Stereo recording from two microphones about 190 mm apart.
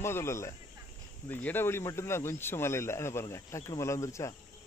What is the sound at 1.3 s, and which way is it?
Speech, 10° left (ahead or behind).